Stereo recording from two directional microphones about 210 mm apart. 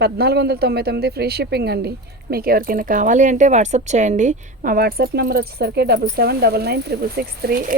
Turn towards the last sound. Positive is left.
turn(degrees=-40)  # may be behind; listen again after turning